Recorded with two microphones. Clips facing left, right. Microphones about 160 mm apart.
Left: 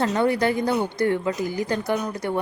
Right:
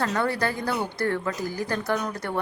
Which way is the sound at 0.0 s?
20° left (ahead or behind).